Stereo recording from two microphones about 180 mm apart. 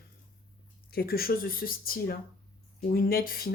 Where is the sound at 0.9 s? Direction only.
60° left (ahead or behind).